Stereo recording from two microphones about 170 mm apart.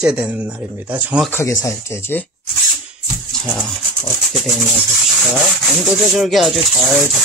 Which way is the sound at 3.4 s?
5° left (ahead or behind).